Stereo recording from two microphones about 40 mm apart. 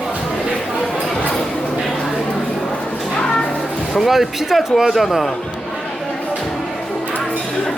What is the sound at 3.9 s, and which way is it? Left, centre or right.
Speech, centre.